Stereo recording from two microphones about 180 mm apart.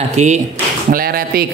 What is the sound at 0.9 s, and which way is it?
Speech, 55° right (ahead or behind).